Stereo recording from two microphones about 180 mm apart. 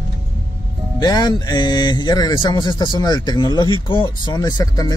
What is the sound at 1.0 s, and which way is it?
Speech, 25° left (ahead or behind).